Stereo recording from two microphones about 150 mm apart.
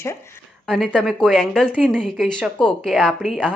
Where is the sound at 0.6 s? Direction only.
5° left (ahead or behind).